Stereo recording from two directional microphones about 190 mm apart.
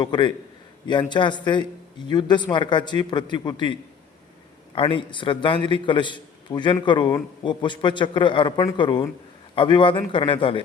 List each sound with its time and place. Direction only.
0.0 s a man's voice: 25° left (ahead or behind)